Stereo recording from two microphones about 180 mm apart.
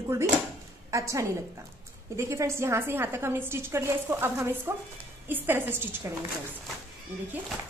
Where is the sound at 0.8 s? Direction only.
15° right (ahead or behind).